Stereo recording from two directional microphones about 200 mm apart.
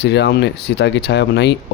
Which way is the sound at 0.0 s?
60° left (ahead or behind).